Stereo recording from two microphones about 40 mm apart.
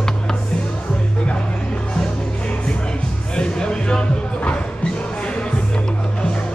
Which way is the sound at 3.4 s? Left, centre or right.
Left.